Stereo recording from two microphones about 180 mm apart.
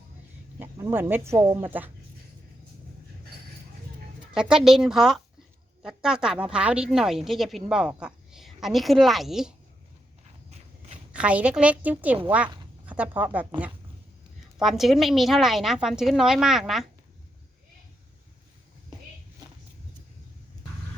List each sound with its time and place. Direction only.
0.6 s speech: 15° right (ahead or behind)
4.4 s a woman's voice: 5° right (ahead or behind)
11.1 s speech: 5° right (ahead or behind)
14.6 s a woman's voice: centre (ahead or behind)